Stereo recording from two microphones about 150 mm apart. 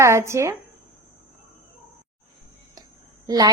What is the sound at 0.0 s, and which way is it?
Speech, 20° right (ahead or behind).